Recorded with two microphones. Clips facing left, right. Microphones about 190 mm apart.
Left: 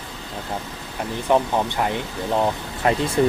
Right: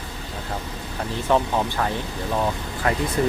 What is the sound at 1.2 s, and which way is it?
Speech, 15° left (ahead or behind).